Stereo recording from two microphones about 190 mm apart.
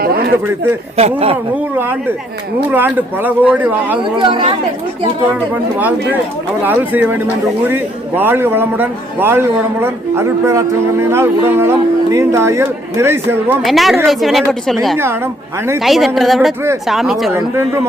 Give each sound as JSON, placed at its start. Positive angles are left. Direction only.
{"t": 0.0, "sound": "a sound", "side_deg": -55}
{"t": 0.9, "sound": "speech", "side_deg": -35}
{"t": 2.6, "sound": "a man's voice", "side_deg": -10}
{"t": 4.2, "sound": "speech", "side_deg": -25}
{"t": 6.6, "sound": "a man's voice", "side_deg": -10}
{"t": 13.7, "sound": "a woman's voice", "side_deg": 0}
{"t": 17.3, "sound": "a man's voice", "side_deg": -10}